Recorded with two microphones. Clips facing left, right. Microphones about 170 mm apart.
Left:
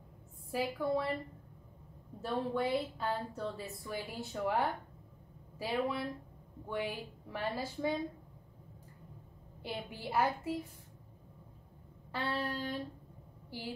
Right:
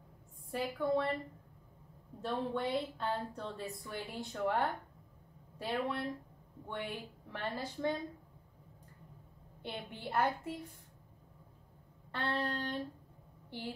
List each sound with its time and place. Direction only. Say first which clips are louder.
0.5 s a woman's voice: even; 5° left (ahead or behind)
2.2 s a woman's voice: left 2 dB; centre (ahead or behind)
9.6 s a woman's voice: left 2 dB; 5° left (ahead or behind)
12.1 s a woman's voice: even; 5° left (ahead or behind)